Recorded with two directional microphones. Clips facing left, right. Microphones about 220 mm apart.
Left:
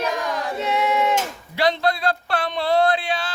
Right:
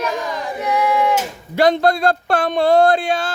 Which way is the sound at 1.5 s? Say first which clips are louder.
Right 6 dB; 45° right (ahead or behind).